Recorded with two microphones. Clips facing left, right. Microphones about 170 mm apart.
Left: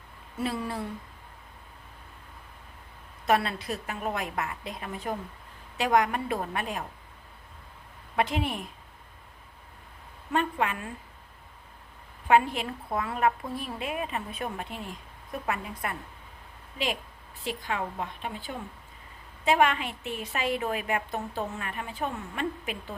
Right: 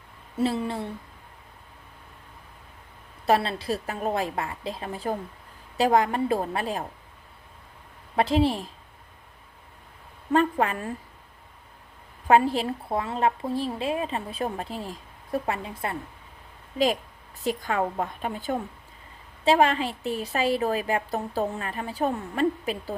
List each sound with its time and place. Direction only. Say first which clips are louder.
0.3 s a woman's voice: right 5 dB; 25° right (ahead or behind)
3.2 s a woman's voice: right 3 dB; 30° right (ahead or behind)
8.1 s a woman's voice: right 6 dB; 30° right (ahead or behind)
10.3 s a woman's voice: right 5 dB; 35° right (ahead or behind)
12.3 s a woman's voice: right 3 dB; 35° right (ahead or behind)
16.7 s a woman's voice: right 8 dB; 40° right (ahead or behind)
19.5 s a woman's voice: right 3 dB; 30° right (ahead or behind)